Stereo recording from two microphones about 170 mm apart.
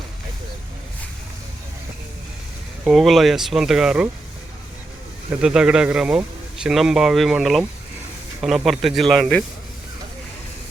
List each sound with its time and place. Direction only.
2.8 s speech: centre (ahead or behind)
5.3 s speech: 5° right (ahead or behind)